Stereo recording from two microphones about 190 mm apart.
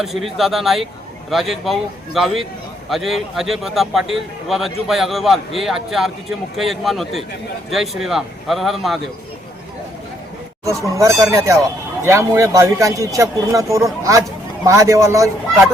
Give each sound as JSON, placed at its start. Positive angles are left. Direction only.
{"t": 0.0, "sound": "a man's voice", "side_deg": 0}
{"t": 10.7, "sound": "speech", "side_deg": -15}